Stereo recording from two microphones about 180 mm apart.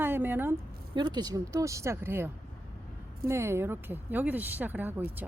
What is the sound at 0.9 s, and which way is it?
A woman's voice, 25° right (ahead or behind).